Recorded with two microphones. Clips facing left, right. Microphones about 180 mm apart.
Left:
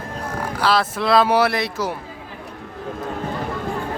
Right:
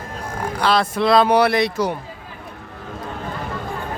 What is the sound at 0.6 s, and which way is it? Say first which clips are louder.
Speech: right 2 dB; 5° left (ahead or behind).